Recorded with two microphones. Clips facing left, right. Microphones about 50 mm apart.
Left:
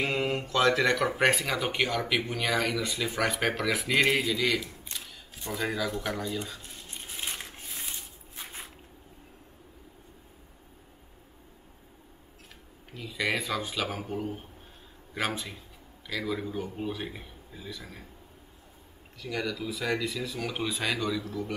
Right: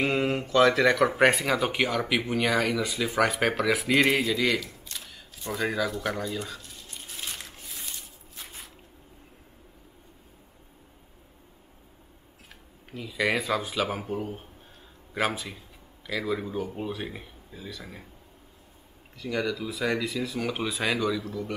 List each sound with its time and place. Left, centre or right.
0.0 s speech: centre
4.9 s camera: centre
6.0 s speech: centre
6.6 s a sound: left
12.9 s speech: centre
19.2 s speech: centre